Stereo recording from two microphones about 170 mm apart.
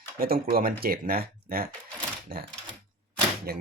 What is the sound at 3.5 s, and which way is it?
Speech, 65° right (ahead or behind).